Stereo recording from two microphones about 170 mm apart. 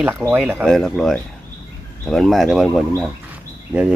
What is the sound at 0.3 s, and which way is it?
Speech, 10° right (ahead or behind).